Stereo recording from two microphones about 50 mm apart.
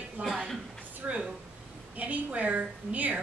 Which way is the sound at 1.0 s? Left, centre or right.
Centre.